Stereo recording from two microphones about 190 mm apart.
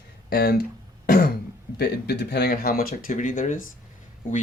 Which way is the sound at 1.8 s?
60° left (ahead or behind).